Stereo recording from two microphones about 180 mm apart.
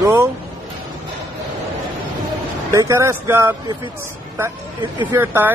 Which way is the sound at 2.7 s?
15° right (ahead or behind).